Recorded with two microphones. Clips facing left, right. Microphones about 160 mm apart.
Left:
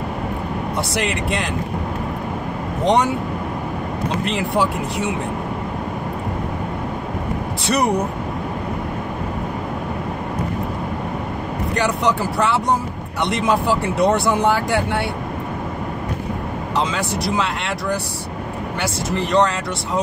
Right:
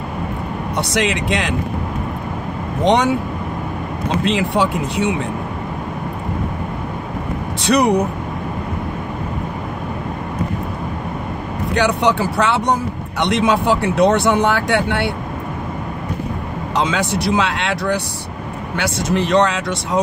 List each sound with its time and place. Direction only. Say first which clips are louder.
0.9 s speech: right 5 dB; 75° right (ahead or behind)
2.8 s speech: right 2 dB; 75° right (ahead or behind)
4.2 s speech: right 3 dB; 70° right (ahead or behind)
7.6 s speech: right 4 dB; 70° right (ahead or behind)
11.7 s speech: right 4 dB; 75° right (ahead or behind)
16.9 s speech: right 4 dB; 75° right (ahead or behind)
19.1 s speech: right 2 dB; 75° right (ahead or behind)